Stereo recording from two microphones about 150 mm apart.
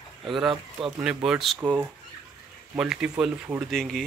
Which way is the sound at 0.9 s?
5° right (ahead or behind).